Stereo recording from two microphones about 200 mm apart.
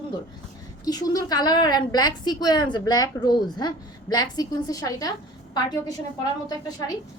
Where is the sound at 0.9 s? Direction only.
20° left (ahead or behind).